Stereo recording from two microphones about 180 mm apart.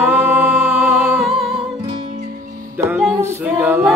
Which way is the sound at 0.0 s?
10° right (ahead or behind).